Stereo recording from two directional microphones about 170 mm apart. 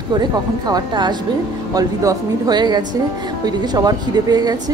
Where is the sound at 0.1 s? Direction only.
25° right (ahead or behind).